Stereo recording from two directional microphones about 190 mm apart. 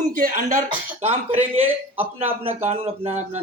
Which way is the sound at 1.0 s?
35° right (ahead or behind).